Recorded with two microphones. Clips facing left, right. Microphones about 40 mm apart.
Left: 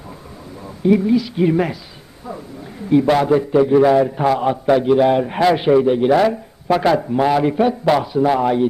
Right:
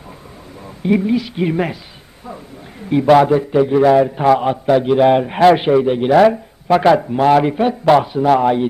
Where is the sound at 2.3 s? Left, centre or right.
Right.